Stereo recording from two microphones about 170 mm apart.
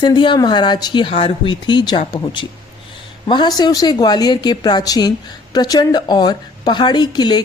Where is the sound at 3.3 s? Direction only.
25° left (ahead or behind).